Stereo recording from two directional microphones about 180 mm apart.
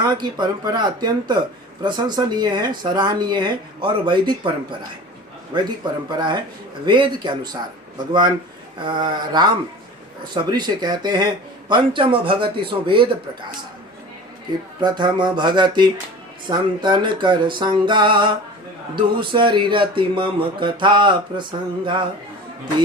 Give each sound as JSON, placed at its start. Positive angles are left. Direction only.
{"t": 0.0, "sound": "speech", "side_deg": -25}
{"t": 5.8, "sound": "speech", "side_deg": -25}
{"t": 14.8, "sound": "speech", "side_deg": -25}